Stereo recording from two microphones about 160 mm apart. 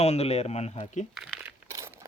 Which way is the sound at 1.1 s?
Centre (ahead or behind).